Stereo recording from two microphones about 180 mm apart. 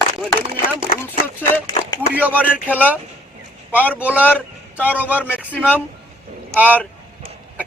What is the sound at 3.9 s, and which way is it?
Speech, 10° right (ahead or behind).